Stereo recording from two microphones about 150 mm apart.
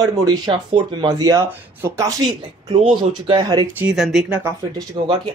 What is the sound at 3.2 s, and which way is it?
Speech, 30° right (ahead or behind).